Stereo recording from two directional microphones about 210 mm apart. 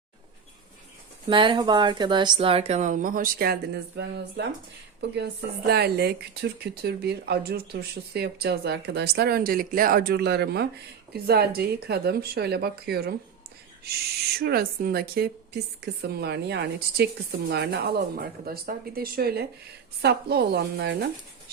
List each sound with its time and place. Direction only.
1.3 s a woman's voice: 25° right (ahead or behind); by 13.1 s 50° right (ahead or behind)
14.3 s speech: 45° right (ahead or behind)